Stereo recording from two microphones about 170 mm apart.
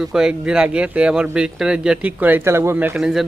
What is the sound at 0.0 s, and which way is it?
Speech, 5° right (ahead or behind).